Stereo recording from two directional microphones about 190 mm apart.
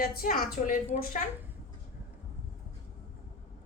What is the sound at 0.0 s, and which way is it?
A woman's voice, 50° left (ahead or behind).